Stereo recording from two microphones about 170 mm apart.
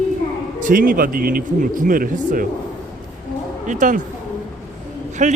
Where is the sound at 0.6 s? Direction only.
55° right (ahead or behind).